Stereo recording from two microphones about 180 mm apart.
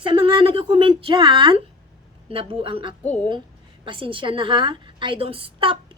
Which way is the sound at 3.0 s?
5° left (ahead or behind).